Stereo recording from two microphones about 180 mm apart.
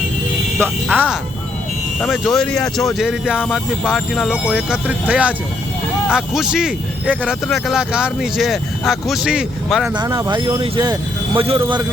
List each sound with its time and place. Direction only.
0.6 s speech: 10° right (ahead or behind)
9.9 s speech: 25° right (ahead or behind)